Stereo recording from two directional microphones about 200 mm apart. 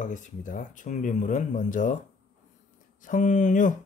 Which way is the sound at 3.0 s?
40° left (ahead or behind).